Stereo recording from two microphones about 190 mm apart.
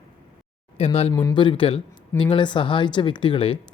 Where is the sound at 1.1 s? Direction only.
20° left (ahead or behind).